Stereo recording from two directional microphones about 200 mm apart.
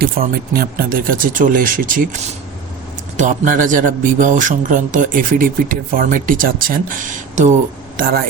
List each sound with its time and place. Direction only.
0.0 s speech: 50° right (ahead or behind)
3.2 s speech: 40° right (ahead or behind)